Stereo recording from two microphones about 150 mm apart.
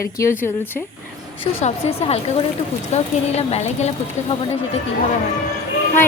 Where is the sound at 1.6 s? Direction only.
40° left (ahead or behind).